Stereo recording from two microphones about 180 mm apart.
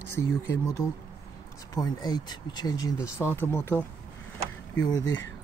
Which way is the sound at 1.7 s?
20° left (ahead or behind).